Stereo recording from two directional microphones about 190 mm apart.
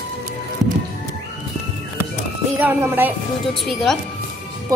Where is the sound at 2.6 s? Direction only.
10° right (ahead or behind).